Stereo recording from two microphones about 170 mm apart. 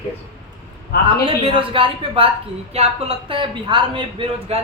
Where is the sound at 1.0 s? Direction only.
30° right (ahead or behind).